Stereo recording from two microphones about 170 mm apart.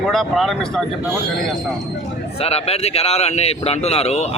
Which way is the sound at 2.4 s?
35° left (ahead or behind).